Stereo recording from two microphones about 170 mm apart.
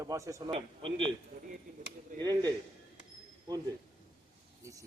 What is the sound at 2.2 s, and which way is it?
Speech, 25° right (ahead or behind).